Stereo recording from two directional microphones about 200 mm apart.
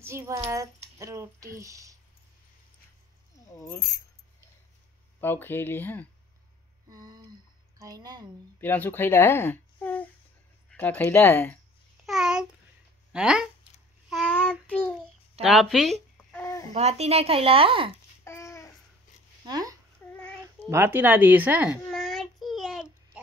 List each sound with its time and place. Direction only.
0.0 s a woman's voice: 15° right (ahead or behind)
3.5 s speech: 15° left (ahead or behind)
5.2 s speech: 10° left (ahead or behind)
6.9 s speech: 20° right (ahead or behind)
8.5 s speech: 10° left (ahead or behind)
12.1 s a child's voice: 5° right (ahead or behind)
14.0 s child singing: centre (ahead or behind)
15.4 s speech: centre (ahead or behind)
16.3 s a sound: 10° left (ahead or behind)
16.7 s speech: 30° right (ahead or behind)
18.2 s babbling: 15° left (ahead or behind)
19.4 s speech: 20° right (ahead or behind)
20.7 s a woman's voice: 10° right (ahead or behind)
21.8 s child singing: centre (ahead or behind)